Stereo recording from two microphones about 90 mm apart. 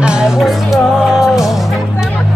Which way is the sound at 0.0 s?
10° right (ahead or behind).